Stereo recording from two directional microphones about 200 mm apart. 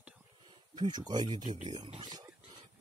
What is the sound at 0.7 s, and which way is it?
Speech, 20° right (ahead or behind).